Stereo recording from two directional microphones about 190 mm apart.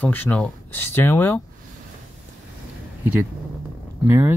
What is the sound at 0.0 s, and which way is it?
Speech, 10° left (ahead or behind).